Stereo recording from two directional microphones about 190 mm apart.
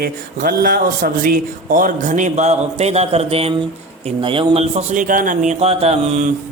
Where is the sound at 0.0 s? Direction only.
50° right (ahead or behind).